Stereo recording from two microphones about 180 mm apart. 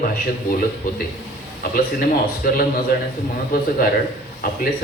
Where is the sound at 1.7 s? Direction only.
50° left (ahead or behind).